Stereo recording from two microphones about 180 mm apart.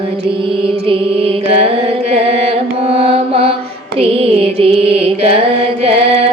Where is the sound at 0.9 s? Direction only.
30° right (ahead or behind).